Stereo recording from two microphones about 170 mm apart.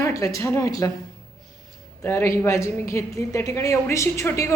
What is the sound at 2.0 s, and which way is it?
A woman's voice, 15° left (ahead or behind).